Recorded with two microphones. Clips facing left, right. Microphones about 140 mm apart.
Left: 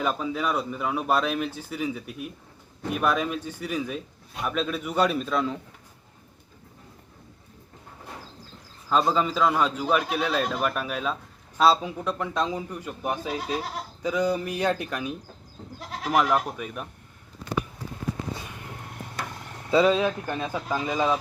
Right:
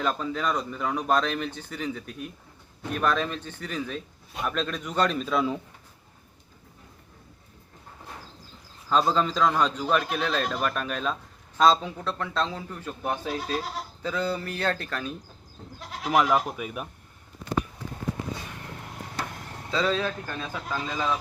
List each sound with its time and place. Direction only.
0.0 s a man's voice: 10° left (ahead or behind)
5.2 s speech: centre (ahead or behind)
8.9 s a man's voice: 5° left (ahead or behind)
16.0 s speech: centre (ahead or behind)
19.8 s a man's voice: 15° left (ahead or behind)